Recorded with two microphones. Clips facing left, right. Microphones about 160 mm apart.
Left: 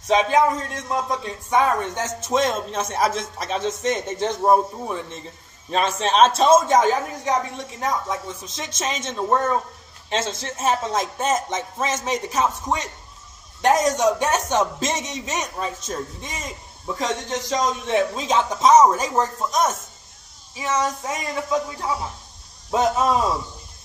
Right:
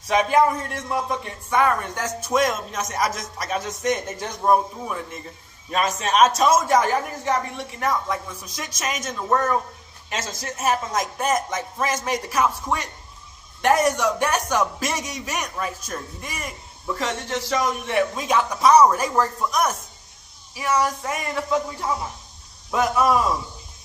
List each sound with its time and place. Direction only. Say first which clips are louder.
0.0 s a man's voice: left 1 dB; 20° left (ahead or behind)
22.7 s a man's voice: even; 25° left (ahead or behind)